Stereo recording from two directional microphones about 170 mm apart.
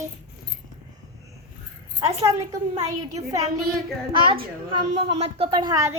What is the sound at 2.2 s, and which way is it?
Speech, 20° right (ahead or behind).